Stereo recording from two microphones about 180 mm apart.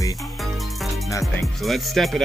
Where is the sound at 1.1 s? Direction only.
15° left (ahead or behind).